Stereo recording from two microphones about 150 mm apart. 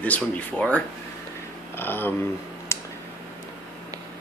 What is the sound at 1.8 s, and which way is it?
Speech, 15° left (ahead or behind).